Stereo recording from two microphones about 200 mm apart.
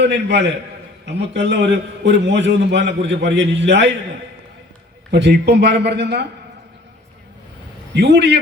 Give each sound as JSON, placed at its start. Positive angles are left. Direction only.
{"t": 0.0, "sound": "a man's voice", "side_deg": -60}
{"t": 5.1, "sound": "a man's voice", "side_deg": -60}
{"t": 7.9, "sound": "a man's voice", "side_deg": -55}